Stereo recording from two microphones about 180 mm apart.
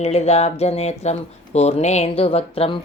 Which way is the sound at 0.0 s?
35° left (ahead or behind).